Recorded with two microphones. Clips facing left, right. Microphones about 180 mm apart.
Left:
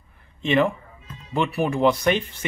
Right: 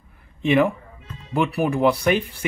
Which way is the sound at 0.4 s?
10° right (ahead or behind).